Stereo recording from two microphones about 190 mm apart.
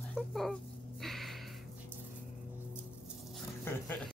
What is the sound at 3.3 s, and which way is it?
Dog, 10° left (ahead or behind).